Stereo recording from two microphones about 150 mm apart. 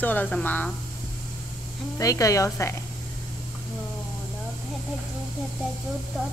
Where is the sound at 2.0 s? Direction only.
20° left (ahead or behind).